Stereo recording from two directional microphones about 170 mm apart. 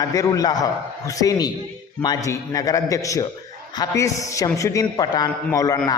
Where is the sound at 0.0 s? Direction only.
20° left (ahead or behind).